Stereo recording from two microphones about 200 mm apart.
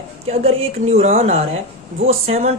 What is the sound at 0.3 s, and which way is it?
Speech, 30° right (ahead or behind).